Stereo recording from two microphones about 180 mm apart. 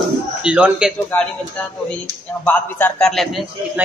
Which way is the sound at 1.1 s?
10° left (ahead or behind).